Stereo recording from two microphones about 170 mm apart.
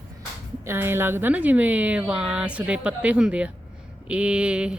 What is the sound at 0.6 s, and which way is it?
A woman's voice, 15° right (ahead or behind).